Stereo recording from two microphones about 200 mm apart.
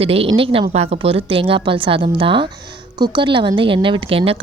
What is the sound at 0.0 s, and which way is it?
A woman's voice, 30° right (ahead or behind).